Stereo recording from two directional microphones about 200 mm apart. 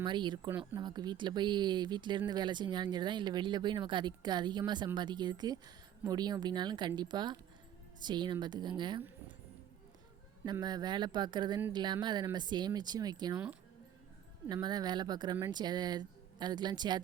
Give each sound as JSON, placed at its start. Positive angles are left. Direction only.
{"t": 0.0, "sound": "speech", "side_deg": -25}
{"t": 10.4, "sound": "speech", "side_deg": -20}
{"t": 14.5, "sound": "speech", "side_deg": -20}